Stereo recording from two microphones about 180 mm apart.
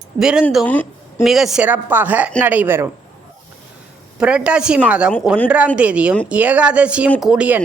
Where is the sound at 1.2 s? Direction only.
Centre (ahead or behind).